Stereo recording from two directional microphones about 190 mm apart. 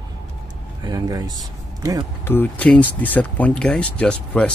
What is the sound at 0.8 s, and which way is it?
Speech, 20° right (ahead or behind).